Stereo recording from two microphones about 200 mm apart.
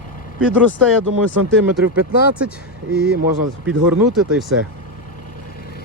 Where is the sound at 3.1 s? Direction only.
50° right (ahead or behind).